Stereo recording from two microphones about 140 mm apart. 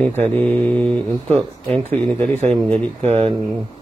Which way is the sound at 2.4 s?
45° right (ahead or behind).